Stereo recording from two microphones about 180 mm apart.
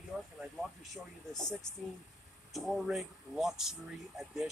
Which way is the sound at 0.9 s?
5° left (ahead or behind).